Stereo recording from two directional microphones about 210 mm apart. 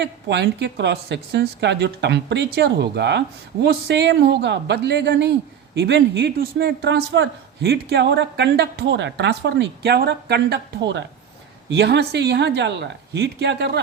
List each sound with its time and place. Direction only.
0.0 s speech: 55° right (ahead or behind)